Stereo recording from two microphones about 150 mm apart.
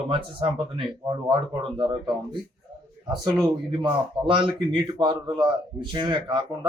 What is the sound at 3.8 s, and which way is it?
Speech, 35° right (ahead or behind).